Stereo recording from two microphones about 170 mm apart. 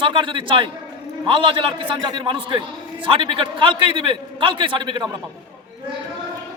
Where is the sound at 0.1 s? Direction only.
30° right (ahead or behind).